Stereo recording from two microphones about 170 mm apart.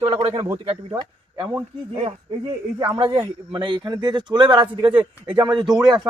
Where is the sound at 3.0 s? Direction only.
30° right (ahead or behind).